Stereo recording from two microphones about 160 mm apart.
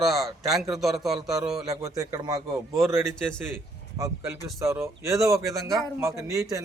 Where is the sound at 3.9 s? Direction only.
20° right (ahead or behind).